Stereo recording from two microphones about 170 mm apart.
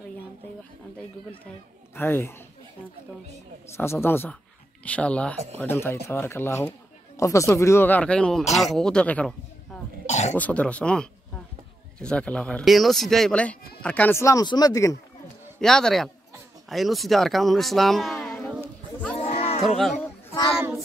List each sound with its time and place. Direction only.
2.0 s speech: 15° left (ahead or behind)
3.7 s speech: 15° left (ahead or behind)
10.0 s throat clearing: 40° left (ahead or behind)
10.3 s speech: 10° left (ahead or behind)
15.6 s speech: 5° left (ahead or behind)
19.1 s livestock: 35° left (ahead or behind)
19.8 s speech: centre (ahead or behind)